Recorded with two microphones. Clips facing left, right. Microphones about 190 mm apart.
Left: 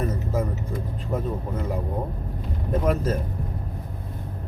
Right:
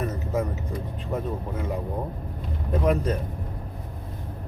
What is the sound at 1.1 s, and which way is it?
Speech, centre (ahead or behind).